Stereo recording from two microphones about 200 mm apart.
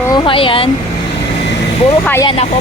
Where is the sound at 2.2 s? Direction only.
30° left (ahead or behind).